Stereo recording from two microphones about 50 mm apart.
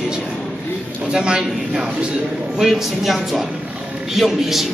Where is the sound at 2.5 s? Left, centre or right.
Centre.